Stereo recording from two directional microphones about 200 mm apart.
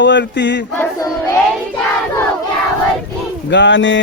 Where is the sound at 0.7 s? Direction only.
10° left (ahead or behind).